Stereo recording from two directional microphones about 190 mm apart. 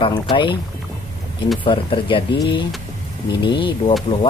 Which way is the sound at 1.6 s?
25° left (ahead or behind).